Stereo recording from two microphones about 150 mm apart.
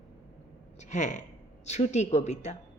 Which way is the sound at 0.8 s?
50° left (ahead or behind).